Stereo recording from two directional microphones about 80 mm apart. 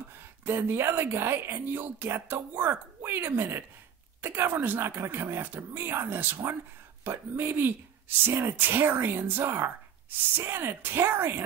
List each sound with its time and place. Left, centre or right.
0.5 s speech: right